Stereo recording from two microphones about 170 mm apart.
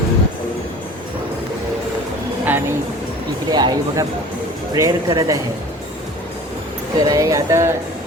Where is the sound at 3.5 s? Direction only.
25° right (ahead or behind).